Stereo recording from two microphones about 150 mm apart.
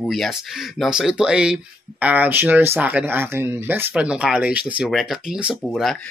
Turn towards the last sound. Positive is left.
turn(degrees=5)  # may be behind; listen again after turning